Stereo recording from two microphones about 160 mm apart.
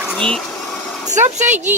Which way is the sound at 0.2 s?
5° left (ahead or behind).